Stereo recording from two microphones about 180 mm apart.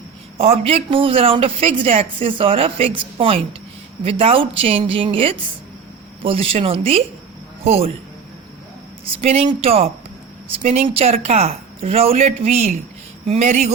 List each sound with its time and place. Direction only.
0.3 s a man's voice: 30° right (ahead or behind)
9.2 s speech: 35° right (ahead or behind)